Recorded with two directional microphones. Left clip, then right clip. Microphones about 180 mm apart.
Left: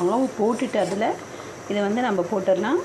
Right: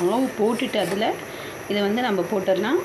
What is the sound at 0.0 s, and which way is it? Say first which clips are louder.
Speech: even; 5° left (ahead or behind).